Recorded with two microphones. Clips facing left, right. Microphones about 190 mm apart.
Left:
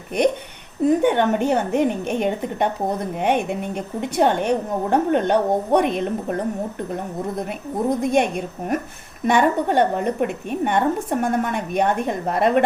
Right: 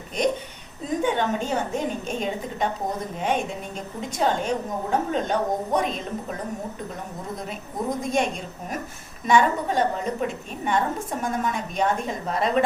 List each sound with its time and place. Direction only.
0.2 s a woman's voice: 65° left (ahead or behind)
8.0 s a woman's voice: 60° left (ahead or behind)